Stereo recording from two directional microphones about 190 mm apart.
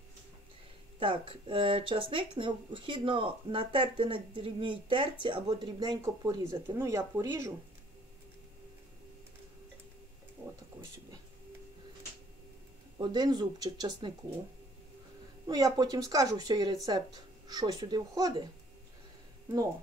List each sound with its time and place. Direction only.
0.9 s speech: 30° right (ahead or behind)
13.0 s speech: 20° right (ahead or behind)
15.4 s speech: 20° right (ahead or behind)